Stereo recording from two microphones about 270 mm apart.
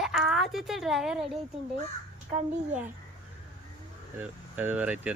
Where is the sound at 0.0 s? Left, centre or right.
Centre.